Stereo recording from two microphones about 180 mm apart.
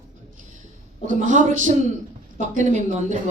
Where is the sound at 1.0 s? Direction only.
45° right (ahead or behind).